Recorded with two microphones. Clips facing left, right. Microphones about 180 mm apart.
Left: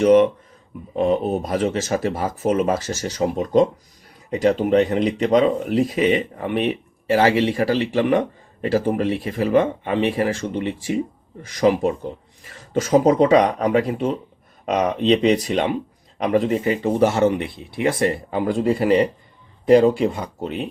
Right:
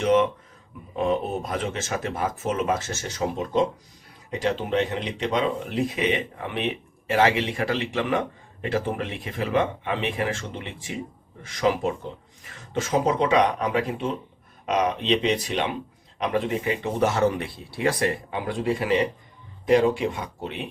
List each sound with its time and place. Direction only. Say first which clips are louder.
0.0 s speech: left 7 dB; 35° left (ahead or behind); by 17.9 s 20° left (ahead or behind)
18.3 s speech: left 6 dB; 40° left (ahead or behind)